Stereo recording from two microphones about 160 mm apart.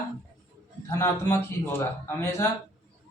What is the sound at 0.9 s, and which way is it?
A man's voice, 15° left (ahead or behind).